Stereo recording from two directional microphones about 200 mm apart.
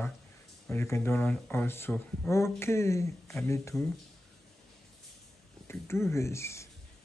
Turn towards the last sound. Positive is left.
turn(degrees=15)  # may be behind; listen again after turning